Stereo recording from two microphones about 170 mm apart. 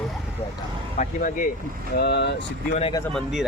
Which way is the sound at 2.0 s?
80° left.